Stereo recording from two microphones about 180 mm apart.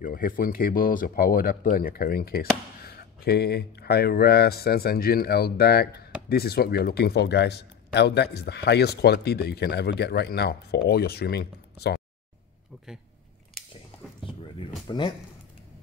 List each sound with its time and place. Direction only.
0.0 s speech: 55° left (ahead or behind)
14.2 s a sound: 30° left (ahead or behind)
14.9 s a man's voice: 25° left (ahead or behind)